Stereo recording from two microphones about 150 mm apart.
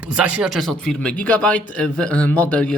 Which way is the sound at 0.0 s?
10° right (ahead or behind).